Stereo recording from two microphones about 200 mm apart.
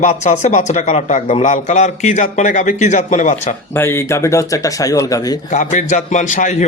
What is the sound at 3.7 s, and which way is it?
Speech, 10° left (ahead or behind).